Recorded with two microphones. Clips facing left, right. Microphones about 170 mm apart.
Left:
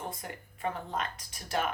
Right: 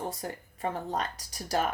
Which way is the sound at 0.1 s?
40° right (ahead or behind).